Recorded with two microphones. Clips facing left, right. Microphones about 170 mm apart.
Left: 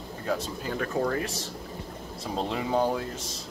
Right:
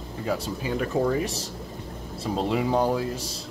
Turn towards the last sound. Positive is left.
turn(degrees=-10)  # may be behind; listen again after turning